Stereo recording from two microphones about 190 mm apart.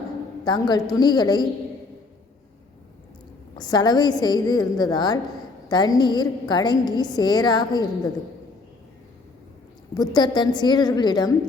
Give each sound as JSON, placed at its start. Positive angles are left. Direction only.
{"t": 0.4, "sound": "a woman's voice", "side_deg": 20}
{"t": 3.6, "sound": "a woman's voice", "side_deg": 20}
{"t": 10.2, "sound": "a woman's voice", "side_deg": 25}